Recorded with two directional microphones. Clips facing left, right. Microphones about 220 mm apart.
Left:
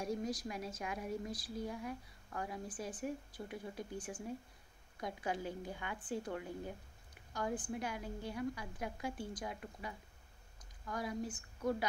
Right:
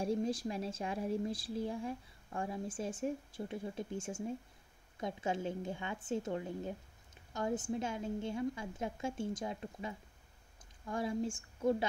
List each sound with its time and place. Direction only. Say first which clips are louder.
0.0 s speech: right 5 dB; 30° right (ahead or behind)